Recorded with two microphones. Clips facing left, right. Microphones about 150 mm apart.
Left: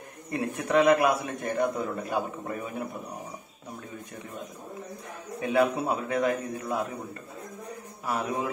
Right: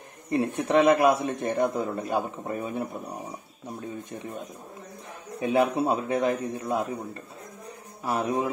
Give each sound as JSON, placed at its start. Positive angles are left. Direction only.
{"t": 0.3, "sound": "a man's voice", "side_deg": -30}
{"t": 5.4, "sound": "a man's voice", "side_deg": -25}
{"t": 8.0, "sound": "a man's voice", "side_deg": -25}